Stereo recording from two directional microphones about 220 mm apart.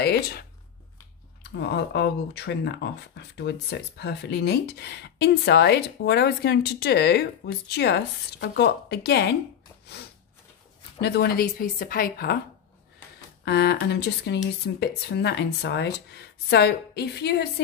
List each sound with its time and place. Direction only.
0.0 s speech: 45° left (ahead or behind)
9.9 s a sound: 50° left (ahead or behind)
11.0 s speech: 50° left (ahead or behind)
13.5 s speech: 50° left (ahead or behind)